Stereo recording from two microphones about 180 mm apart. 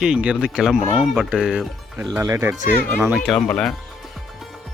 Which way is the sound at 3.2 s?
5° left (ahead or behind).